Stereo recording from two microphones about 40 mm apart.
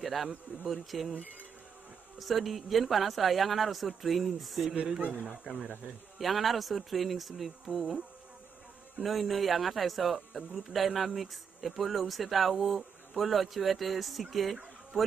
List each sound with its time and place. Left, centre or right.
0.0 s insect: centre
0.7 s speech: centre
2.1 s speech: centre
4.7 s speech: right
6.1 s speech: centre
9.0 s speech: centre